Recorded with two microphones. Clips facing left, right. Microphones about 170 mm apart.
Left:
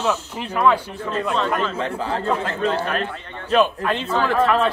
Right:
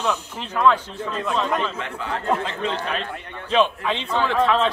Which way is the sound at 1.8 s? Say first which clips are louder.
Left 5 dB; 35° left (ahead or behind).